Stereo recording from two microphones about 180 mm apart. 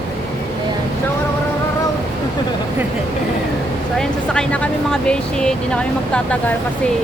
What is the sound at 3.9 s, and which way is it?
Speech, 5° left (ahead or behind).